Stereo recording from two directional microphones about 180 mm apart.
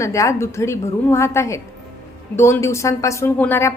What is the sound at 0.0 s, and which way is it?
A woman's voice, 15° left (ahead or behind).